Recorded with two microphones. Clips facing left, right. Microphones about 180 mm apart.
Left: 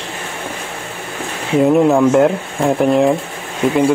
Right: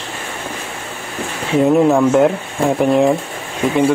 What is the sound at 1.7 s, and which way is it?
A man's voice, centre (ahead or behind).